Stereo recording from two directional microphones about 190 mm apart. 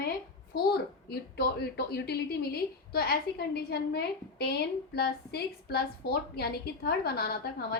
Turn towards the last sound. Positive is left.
turn(degrees=55)  # may be behind; listen again after turning